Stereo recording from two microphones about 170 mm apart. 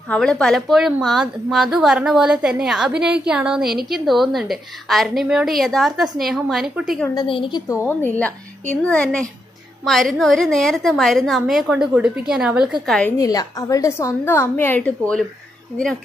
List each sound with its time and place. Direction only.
0.1 s a woman's voice: 5° left (ahead or behind)
7.2 s a woman's voice: 30° left (ahead or behind); by 13.1 s 5° left (ahead or behind)
13.2 s a woman's voice: 20° left (ahead or behind)